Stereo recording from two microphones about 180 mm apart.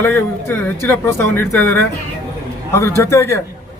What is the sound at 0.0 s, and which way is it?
A man's voice, 10° left (ahead or behind).